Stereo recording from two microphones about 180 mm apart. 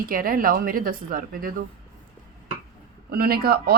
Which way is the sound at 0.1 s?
50° right (ahead or behind).